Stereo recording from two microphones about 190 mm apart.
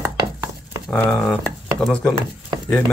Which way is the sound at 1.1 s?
5° left (ahead or behind).